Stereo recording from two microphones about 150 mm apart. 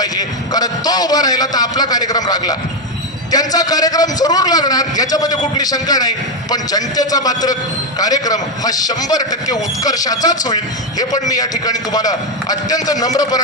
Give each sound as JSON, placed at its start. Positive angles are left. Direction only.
{"t": 0.0, "sound": "a man's voice", "side_deg": 25}